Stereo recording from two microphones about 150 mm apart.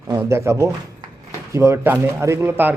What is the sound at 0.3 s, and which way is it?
Speech, 20° right (ahead or behind).